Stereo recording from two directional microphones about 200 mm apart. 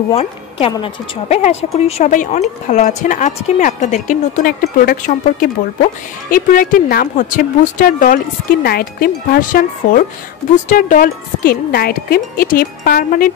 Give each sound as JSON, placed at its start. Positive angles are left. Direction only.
{"t": 0.1, "sound": "a woman's voice", "side_deg": 30}